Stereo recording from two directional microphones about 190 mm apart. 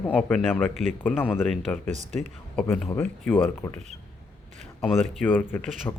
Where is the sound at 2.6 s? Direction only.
10° left (ahead or behind).